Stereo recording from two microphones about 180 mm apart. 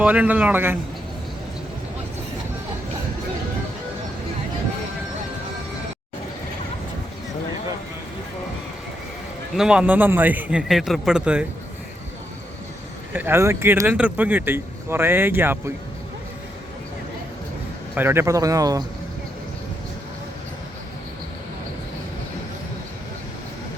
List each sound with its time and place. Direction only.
0.0 s speech: 10° right (ahead or behind)
9.6 s a man's voice: 5° right (ahead or behind)
13.1 s speech: 10° right (ahead or behind)
17.9 s speech: 15° right (ahead or behind)